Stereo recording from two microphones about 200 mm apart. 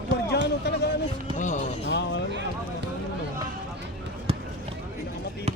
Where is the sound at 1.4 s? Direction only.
40° left (ahead or behind).